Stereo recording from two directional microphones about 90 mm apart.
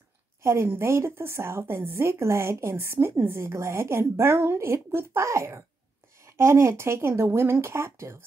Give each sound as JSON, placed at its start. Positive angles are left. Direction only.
{"t": 0.4, "sound": "a woman's voice", "side_deg": -30}